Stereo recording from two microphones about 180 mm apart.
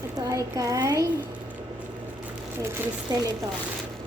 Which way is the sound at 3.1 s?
20° right (ahead or behind).